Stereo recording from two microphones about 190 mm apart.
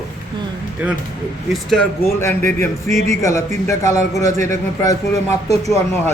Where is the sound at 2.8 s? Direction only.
40° right (ahead or behind).